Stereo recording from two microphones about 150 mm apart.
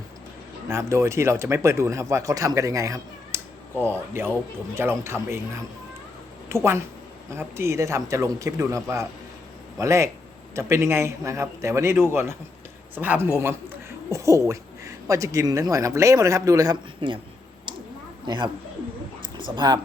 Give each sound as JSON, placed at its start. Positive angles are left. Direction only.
{"t": 0.7, "sound": "a woman's voice", "side_deg": -20}
{"t": 18.3, "sound": "speech", "side_deg": -30}